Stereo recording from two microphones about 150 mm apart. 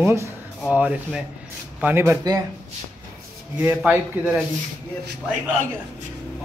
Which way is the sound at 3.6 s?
10° right (ahead or behind).